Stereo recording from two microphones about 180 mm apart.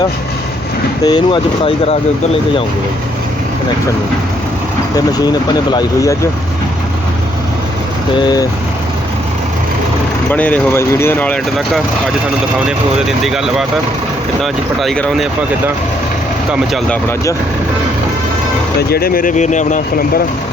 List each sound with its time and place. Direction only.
1.0 s speech: 25° left (ahead or behind)
4.9 s speech: 20° left (ahead or behind)
8.1 s speech: 25° left (ahead or behind)
10.2 s speech: 10° left (ahead or behind)
13.1 s speech: centre (ahead or behind)
16.5 s speech: centre (ahead or behind)
18.8 s speech: 60° left (ahead or behind)